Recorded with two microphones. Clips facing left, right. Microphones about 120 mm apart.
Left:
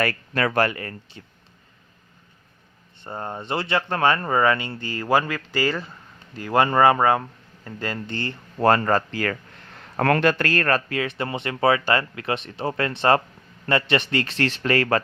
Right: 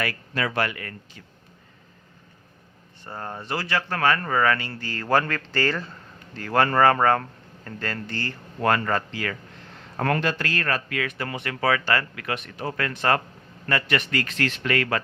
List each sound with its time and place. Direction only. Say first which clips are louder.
0.0 s a man's voice: left 4 dB; 50° left (ahead or behind); by 1.2 s 35° left (ahead or behind)
3.0 s speech: left 3 dB; 20° left (ahead or behind)
8.6 s a man's voice: left 4 dB; 35° left (ahead or behind)
10.0 s speech: left 5 dB; 70° left (ahead or behind); by 10.9 s 45° left (ahead or behind)
10.9 s a man's voice: left 3 dB; 25° left (ahead or behind)